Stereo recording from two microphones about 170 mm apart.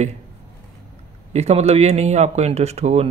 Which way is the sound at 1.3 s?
40° right (ahead or behind).